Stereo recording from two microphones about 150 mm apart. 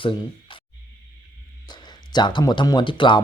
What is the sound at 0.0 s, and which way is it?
Speech, 35° left (ahead or behind).